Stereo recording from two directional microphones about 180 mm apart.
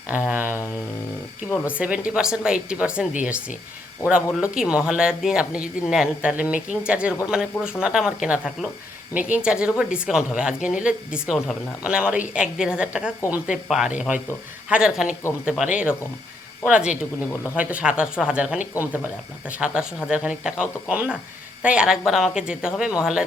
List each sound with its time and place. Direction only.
0.1 s a woman's voice: 5° right (ahead or behind)